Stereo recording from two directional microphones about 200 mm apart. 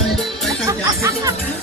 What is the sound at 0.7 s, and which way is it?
Speech, 15° right (ahead or behind).